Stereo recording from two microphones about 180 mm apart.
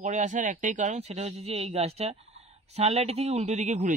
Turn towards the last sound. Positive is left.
turn(degrees=-40)  # may be behind; listen again after turning